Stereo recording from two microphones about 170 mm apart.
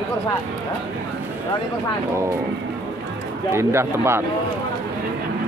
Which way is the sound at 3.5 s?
15° right (ahead or behind).